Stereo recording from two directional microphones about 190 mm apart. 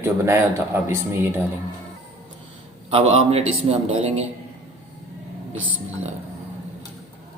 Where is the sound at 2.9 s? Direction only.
35° right (ahead or behind).